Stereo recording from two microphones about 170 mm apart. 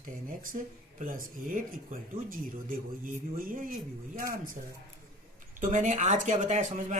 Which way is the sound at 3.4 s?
55° right (ahead or behind).